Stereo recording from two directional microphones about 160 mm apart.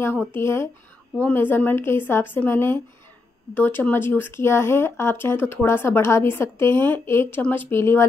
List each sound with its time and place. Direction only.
0.0 s speech: 10° left (ahead or behind)